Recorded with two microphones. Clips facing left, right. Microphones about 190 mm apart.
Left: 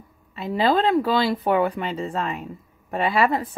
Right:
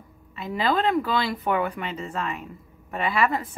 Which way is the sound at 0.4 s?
30° left (ahead or behind).